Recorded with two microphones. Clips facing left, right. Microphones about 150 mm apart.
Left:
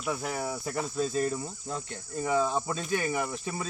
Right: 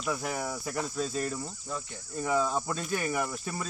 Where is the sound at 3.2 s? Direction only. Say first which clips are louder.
Left 1 dB; 5° left (ahead or behind).